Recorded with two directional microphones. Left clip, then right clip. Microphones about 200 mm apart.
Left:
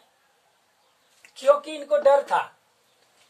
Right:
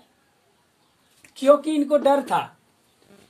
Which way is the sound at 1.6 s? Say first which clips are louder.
Right 1 dB; 30° right (ahead or behind).